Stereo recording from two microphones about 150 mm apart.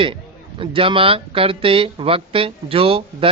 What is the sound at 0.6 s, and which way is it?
A man's voice, 35° right (ahead or behind).